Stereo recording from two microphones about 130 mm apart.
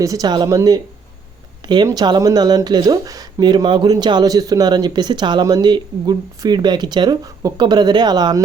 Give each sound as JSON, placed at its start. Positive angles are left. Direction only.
{"t": 0.0, "sound": "speech", "side_deg": -25}